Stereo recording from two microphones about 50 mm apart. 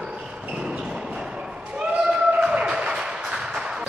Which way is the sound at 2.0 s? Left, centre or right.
Centre.